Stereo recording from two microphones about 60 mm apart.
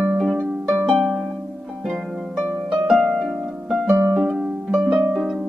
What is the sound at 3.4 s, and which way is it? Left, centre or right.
Harp, centre.